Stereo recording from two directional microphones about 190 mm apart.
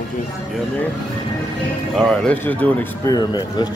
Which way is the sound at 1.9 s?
5° left (ahead or behind).